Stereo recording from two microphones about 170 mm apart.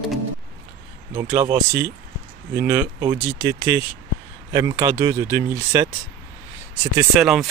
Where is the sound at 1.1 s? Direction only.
20° right (ahead or behind).